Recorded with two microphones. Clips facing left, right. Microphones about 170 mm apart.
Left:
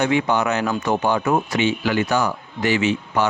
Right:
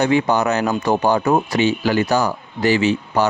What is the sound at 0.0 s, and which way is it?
Speech, 35° right (ahead or behind).